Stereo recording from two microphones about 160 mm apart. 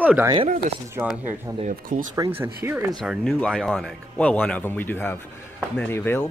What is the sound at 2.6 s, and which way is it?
Speech, 15° right (ahead or behind).